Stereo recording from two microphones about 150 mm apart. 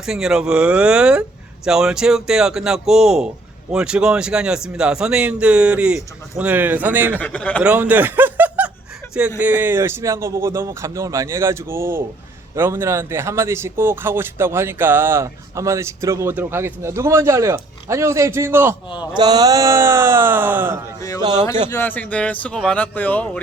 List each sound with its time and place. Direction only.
0.0 s speech: 5° right (ahead or behind)
7.2 s speech: 10° left (ahead or behind)
7.6 s speech: 10° right (ahead or behind)
19.1 s speech: 25° right (ahead or behind)
21.7 s speech: 15° left (ahead or behind)